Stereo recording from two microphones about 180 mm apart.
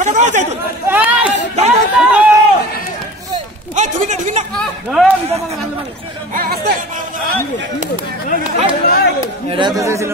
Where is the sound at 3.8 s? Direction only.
45° right (ahead or behind).